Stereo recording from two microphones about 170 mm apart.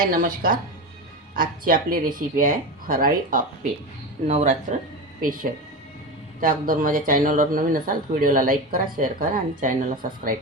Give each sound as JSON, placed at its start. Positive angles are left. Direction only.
{"t": 0.0, "sound": "a man's voice", "side_deg": -55}
{"t": 4.3, "sound": "speech", "side_deg": -40}
{"t": 6.4, "sound": "a man's voice", "side_deg": -55}